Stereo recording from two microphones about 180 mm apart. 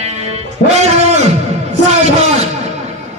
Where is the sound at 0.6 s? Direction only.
35° right (ahead or behind).